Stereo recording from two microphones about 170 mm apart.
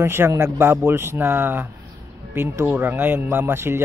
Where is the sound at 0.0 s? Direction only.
15° right (ahead or behind).